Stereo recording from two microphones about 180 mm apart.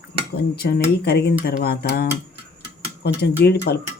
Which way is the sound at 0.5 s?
60° left (ahead or behind).